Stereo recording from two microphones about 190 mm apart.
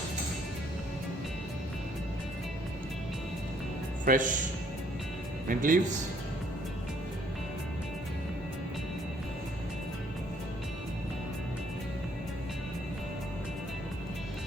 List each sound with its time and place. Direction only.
4.0 s speech: 45° right (ahead or behind)
5.5 s speech: 45° right (ahead or behind)